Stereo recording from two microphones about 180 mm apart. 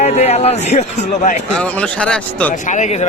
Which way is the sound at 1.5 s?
5° left (ahead or behind).